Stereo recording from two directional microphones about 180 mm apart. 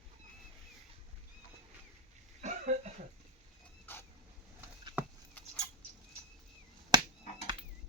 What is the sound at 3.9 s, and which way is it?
Vehicle, 10° left (ahead or behind).